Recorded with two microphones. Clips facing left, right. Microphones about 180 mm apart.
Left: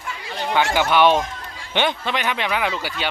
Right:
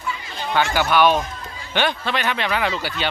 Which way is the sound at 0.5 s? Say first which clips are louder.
Even; 15° left (ahead or behind).